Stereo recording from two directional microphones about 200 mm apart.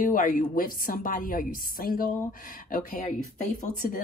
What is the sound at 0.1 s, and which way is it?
A woman's voice, 40° left (ahead or behind).